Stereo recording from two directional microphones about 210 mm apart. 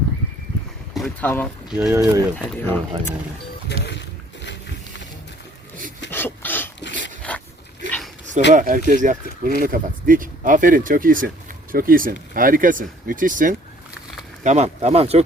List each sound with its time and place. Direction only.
0.9 s speech: 5° left (ahead or behind)
1.7 s speech: 5° right (ahead or behind)
2.3 s speech: 10° left (ahead or behind)
6.1 s filing: 10° left (ahead or behind)
7.2 s a sound: 5° left (ahead or behind)
7.9 s dog: 5° left (ahead or behind)
8.5 s speech: 40° right (ahead or behind)